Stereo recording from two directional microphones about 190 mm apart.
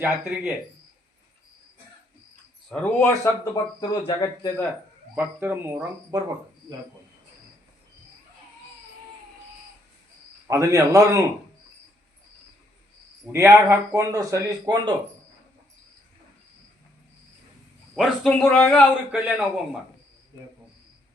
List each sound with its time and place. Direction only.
0.0 s speech: 10° right (ahead or behind)
2.6 s speech: 5° left (ahead or behind)
3.5 s speech: 20° left (ahead or behind)
5.1 s speech: 10° right (ahead or behind)
10.5 s speech: 15° right (ahead or behind)
13.3 s speech: 15° right (ahead or behind)
17.9 s a man's voice: centre (ahead or behind)